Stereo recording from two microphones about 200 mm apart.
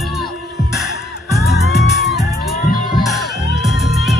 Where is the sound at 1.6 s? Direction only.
55° left (ahead or behind).